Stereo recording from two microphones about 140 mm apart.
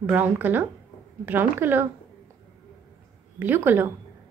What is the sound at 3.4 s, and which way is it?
Speech, 15° right (ahead or behind).